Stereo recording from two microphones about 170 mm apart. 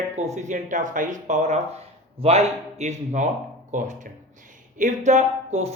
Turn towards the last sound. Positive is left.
turn(degrees=-40)  # may be behind; listen again after turning